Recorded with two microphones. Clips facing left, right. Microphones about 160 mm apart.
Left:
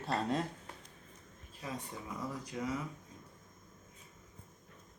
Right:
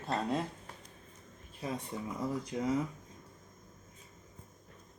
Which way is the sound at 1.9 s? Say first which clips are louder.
Right 5 dB; 25° right (ahead or behind).